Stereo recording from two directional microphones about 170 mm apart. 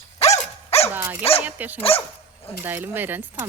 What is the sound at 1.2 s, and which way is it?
Dog, 35° left (ahead or behind).